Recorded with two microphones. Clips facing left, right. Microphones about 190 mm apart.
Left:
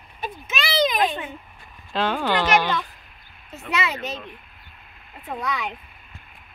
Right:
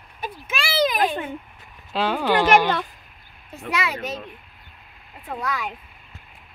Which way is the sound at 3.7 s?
10° right (ahead or behind).